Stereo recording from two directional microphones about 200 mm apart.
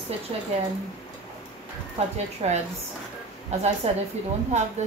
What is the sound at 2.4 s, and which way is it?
A woman's voice, 30° right (ahead or behind).